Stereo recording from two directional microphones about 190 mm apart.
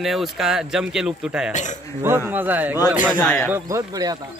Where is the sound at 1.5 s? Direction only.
40° left (ahead or behind).